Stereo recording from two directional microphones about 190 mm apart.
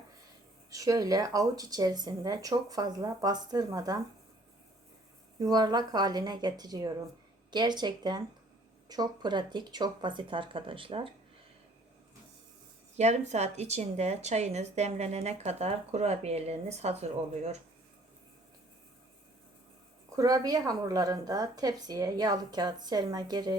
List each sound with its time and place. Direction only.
0.7 s a woman's voice: 15° right (ahead or behind)
5.4 s a woman's voice: 20° right (ahead or behind)
13.0 s a woman's voice: 35° right (ahead or behind)
20.1 s a woman's voice: 20° right (ahead or behind)